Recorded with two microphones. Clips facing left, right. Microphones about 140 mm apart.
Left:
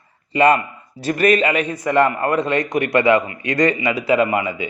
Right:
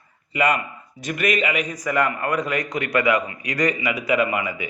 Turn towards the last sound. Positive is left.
turn(degrees=25)  # may be behind; listen again after turning